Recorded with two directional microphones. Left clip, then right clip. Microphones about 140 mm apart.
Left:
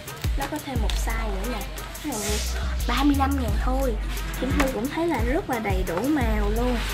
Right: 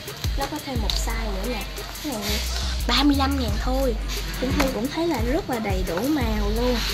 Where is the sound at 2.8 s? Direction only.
25° right (ahead or behind).